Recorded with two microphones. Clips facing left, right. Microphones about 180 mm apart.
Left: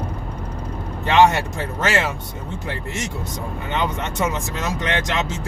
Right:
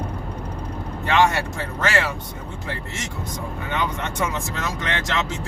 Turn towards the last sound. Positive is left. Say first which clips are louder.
# left 3 dB
turn(degrees=20)  # may be behind; listen again after turning